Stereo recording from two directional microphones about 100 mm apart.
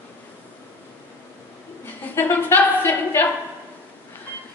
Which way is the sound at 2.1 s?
20° left (ahead or behind).